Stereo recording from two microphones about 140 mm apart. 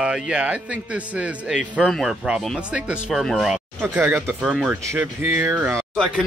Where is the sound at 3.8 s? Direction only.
15° right (ahead or behind).